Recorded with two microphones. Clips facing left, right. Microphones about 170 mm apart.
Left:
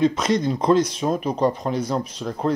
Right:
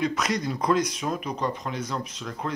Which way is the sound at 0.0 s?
25° left (ahead or behind).